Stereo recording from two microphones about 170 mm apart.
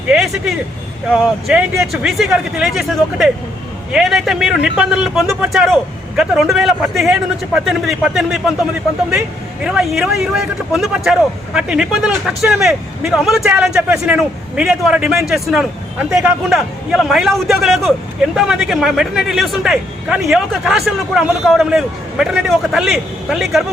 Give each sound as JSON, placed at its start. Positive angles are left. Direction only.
{"t": 0.1, "sound": "speech", "side_deg": 0}
{"t": 9.6, "sound": "speech", "side_deg": 0}